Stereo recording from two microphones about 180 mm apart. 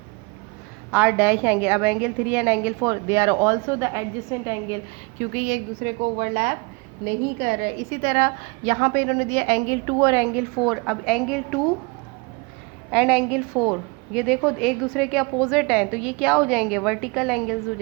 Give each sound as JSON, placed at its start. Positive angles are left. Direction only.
{"t": 0.9, "sound": "a woman's voice", "side_deg": -10}
{"t": 5.2, "sound": "a woman's voice", "side_deg": -40}
{"t": 10.1, "sound": "a woman's voice", "side_deg": -10}
{"t": 12.9, "sound": "a woman's voice", "side_deg": -5}